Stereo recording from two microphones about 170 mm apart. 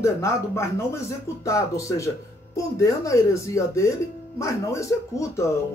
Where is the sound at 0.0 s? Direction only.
15° left (ahead or behind).